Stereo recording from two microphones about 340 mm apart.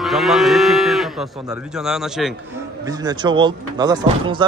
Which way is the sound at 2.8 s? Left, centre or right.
Centre.